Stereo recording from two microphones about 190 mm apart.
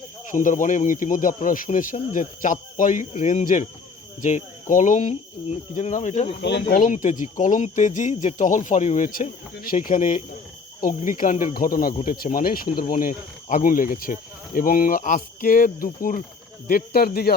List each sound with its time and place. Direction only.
0.3 s speech: 40° left (ahead or behind)
6.4 s speech: 65° left (ahead or behind)
6.7 s speech: 45° left (ahead or behind)